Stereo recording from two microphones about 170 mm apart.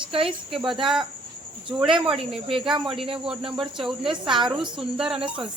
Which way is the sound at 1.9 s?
30° right (ahead or behind).